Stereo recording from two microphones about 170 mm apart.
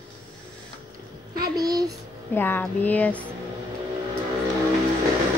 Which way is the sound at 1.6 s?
20° right (ahead or behind).